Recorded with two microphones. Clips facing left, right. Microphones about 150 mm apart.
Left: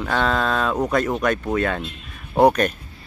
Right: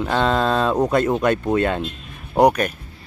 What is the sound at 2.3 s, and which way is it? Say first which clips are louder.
Speech: even; 10° right (ahead or behind).